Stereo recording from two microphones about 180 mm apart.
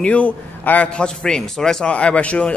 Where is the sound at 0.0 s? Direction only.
5° left (ahead or behind).